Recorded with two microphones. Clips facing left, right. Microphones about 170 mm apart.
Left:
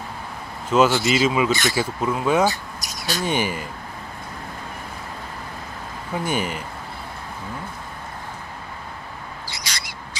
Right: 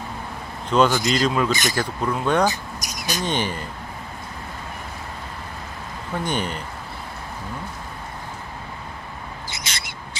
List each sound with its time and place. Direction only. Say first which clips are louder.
0.7 s speech: left 1 dB; 5° left (ahead or behind)
1.5 s speech: left 2 dB; 20° right (ahead or behind)
1.8 s speech: left 1 dB; 5° left (ahead or behind)
2.4 s speech: left 1 dB; 20° right (ahead or behind)
3.3 s speech: left 2 dB; 10° left (ahead or behind)
6.1 s speech: left 1 dB; 5° left (ahead or behind)
9.5 s owl: even; 25° right (ahead or behind)